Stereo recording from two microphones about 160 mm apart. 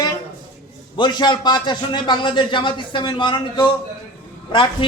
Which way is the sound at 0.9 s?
30° left (ahead or behind).